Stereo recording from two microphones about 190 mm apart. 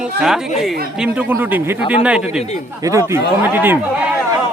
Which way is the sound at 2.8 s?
15° right (ahead or behind).